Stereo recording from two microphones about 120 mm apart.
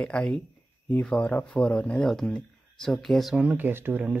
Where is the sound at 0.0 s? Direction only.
5° left (ahead or behind).